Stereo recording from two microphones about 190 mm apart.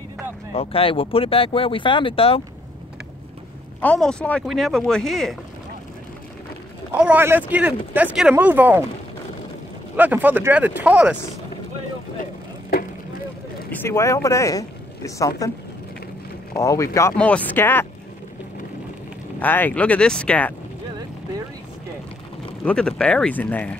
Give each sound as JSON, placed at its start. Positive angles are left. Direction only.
{"t": 0.5, "sound": "speech", "side_deg": 30}
{"t": 3.8, "sound": "speech", "side_deg": 5}
{"t": 6.9, "sound": "speech", "side_deg": -10}
{"t": 9.9, "sound": "speech", "side_deg": -10}
{"t": 13.7, "sound": "speech", "side_deg": 15}
{"t": 16.5, "sound": "speech", "side_deg": 15}
{"t": 19.4, "sound": "speech", "side_deg": 10}
{"t": 22.7, "sound": "speech", "side_deg": 5}